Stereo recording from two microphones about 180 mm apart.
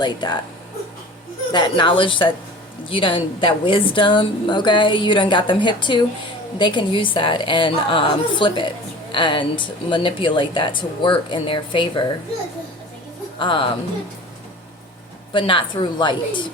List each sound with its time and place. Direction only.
0.0 s a woman's voice: 25° left (ahead or behind)
1.5 s a woman's voice: 25° left (ahead or behind)
13.4 s a woman's voice: 30° left (ahead or behind)
15.3 s a woman's voice: 30° left (ahead or behind)